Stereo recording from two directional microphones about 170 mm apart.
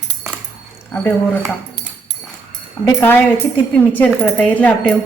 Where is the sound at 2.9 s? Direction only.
15° left (ahead or behind).